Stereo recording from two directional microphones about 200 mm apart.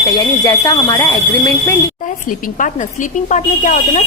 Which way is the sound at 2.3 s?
40° left (ahead or behind).